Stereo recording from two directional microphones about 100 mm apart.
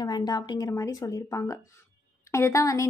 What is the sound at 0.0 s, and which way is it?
A woman's voice, 45° left (ahead or behind).